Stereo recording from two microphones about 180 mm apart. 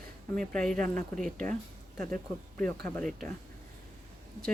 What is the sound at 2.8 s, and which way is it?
Speech, 5° left (ahead or behind).